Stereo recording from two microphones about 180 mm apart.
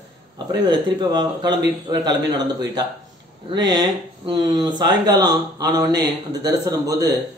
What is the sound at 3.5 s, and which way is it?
Speech, 20° right (ahead or behind).